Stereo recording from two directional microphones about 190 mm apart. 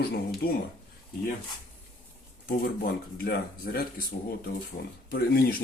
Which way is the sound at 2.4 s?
45° left (ahead or behind).